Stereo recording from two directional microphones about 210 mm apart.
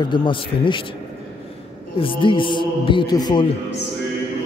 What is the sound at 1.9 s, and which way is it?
A man's voice, 25° left (ahead or behind).